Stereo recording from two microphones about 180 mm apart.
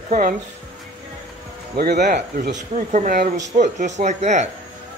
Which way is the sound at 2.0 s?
40° right (ahead or behind).